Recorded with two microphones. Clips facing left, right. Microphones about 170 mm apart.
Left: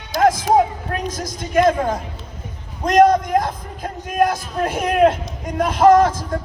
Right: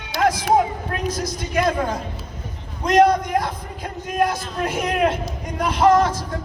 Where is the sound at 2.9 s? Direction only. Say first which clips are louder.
Left 2 dB; 45° left (ahead or behind).